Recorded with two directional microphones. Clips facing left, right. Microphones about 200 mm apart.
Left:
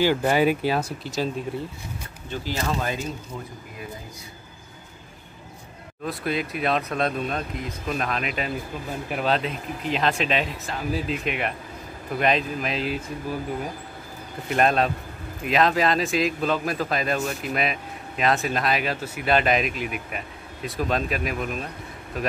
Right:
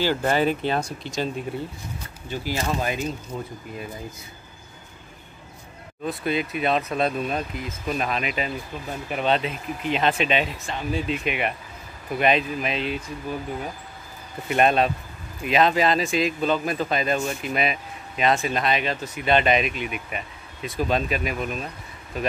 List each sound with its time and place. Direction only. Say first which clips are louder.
0.0 s speech: left 2 dB; 10° left (ahead or behind)
2.2 s speech: right 1 dB; 15° right (ahead or behind)
6.0 s speech: right 2 dB; centre (ahead or behind)
14.5 s speech: right 1 dB; centre (ahead or behind)